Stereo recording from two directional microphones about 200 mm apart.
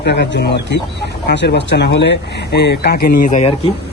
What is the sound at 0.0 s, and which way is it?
Speech, 55° left (ahead or behind).